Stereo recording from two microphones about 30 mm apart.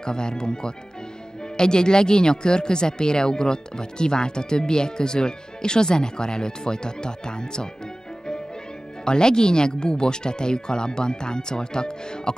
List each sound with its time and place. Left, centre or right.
0.0 s speech: left
9.0 s speech: left